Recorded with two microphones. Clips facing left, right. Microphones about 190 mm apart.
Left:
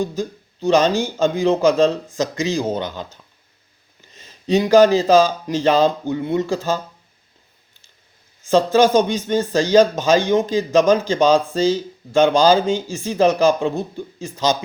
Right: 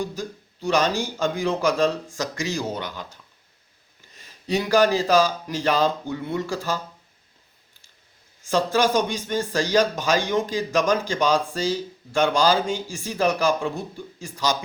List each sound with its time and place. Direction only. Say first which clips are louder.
0.0 s speech: left 6 dB; 20° left (ahead or behind)
8.4 s speech: left 7 dB; 20° left (ahead or behind)